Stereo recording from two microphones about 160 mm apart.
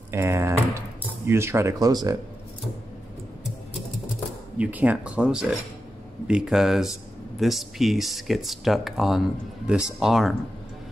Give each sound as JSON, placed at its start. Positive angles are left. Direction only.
{"t": 0.1, "sound": "cutlery", "side_deg": -15}
{"t": 4.6, "sound": "speech", "side_deg": -10}